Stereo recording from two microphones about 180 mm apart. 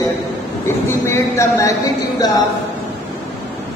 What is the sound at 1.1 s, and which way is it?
Speech, 15° left (ahead or behind).